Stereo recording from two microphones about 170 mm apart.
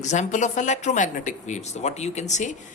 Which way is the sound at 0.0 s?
45° left (ahead or behind).